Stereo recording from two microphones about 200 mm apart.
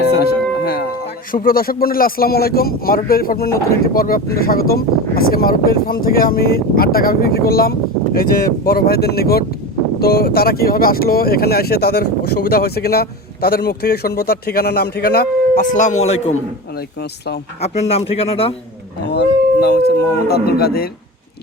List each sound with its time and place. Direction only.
0.2 s speech: 50° left (ahead or behind)
15.7 s a man's voice: 40° left (ahead or behind)
16.7 s speech: 50° left (ahead or behind)
17.6 s speech: 30° left (ahead or behind)
19.0 s speech: 55° left (ahead or behind)